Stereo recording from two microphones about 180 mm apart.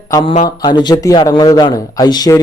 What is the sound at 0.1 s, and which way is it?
A woman's voice, 20° left (ahead or behind).